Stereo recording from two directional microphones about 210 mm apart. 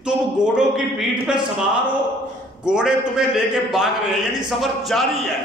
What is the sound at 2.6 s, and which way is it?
A man's voice, 5° right (ahead or behind).